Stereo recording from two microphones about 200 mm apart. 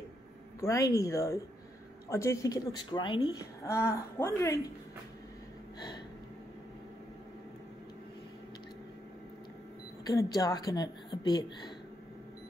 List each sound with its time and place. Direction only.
0.6 s a woman's voice: 15° left (ahead or behind)
10.0 s speech: 20° left (ahead or behind)